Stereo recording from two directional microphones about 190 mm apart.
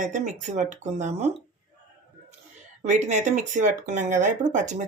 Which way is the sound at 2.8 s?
40° right (ahead or behind).